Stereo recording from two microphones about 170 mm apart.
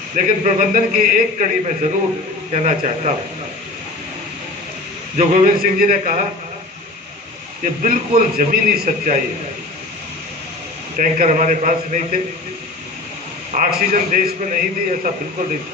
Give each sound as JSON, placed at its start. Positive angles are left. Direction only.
{"t": 0.1, "sound": "a man's voice", "side_deg": -55}
{"t": 5.1, "sound": "a man's voice", "side_deg": -45}
{"t": 5.6, "sound": "a man's voice", "side_deg": -55}
{"t": 7.6, "sound": "a man's voice", "side_deg": -55}
{"t": 11.0, "sound": "a man's voice", "side_deg": -50}
{"t": 13.6, "sound": "a man's voice", "side_deg": -55}